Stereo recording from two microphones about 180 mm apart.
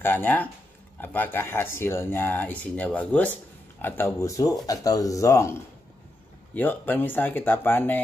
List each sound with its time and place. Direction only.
0.0 s speech: 10° left (ahead or behind)